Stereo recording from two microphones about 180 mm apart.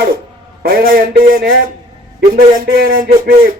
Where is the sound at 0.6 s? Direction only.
55° right (ahead or behind).